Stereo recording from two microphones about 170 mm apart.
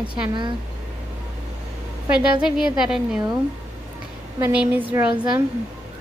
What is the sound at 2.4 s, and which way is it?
Speech, 5° right (ahead or behind).